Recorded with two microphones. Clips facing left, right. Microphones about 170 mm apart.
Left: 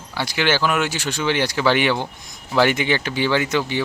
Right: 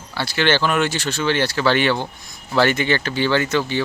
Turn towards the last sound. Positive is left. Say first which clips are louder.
# right 1 dB
turn(degrees=15)  # may be behind; listen again after turning